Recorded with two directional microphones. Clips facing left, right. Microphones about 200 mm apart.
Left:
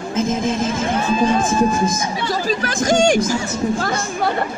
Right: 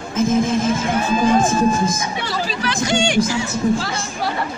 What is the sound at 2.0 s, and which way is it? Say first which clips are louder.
Speech: left 2 dB; 45° left (ahead or behind).